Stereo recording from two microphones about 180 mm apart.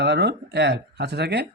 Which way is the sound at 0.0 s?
70° right (ahead or behind).